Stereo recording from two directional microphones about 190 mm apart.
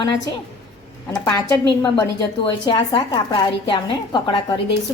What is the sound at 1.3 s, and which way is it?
A woman's voice, 20° left (ahead or behind).